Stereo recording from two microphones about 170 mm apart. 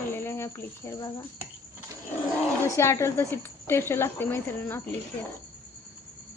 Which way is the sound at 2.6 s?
15° left (ahead or behind).